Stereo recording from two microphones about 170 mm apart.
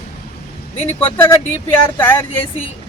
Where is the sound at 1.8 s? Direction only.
15° left (ahead or behind).